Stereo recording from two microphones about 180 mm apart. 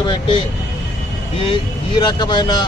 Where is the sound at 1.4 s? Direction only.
25° left (ahead or behind).